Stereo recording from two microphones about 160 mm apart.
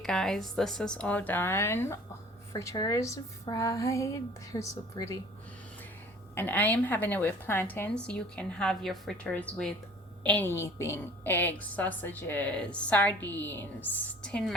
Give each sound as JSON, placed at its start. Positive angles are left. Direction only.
{"t": 0.0, "sound": "a woman's voice", "side_deg": 5}
{"t": 6.3, "sound": "a woman's voice", "side_deg": 10}